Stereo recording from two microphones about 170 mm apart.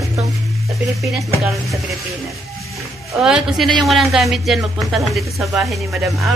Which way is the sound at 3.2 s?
5° right (ahead or behind).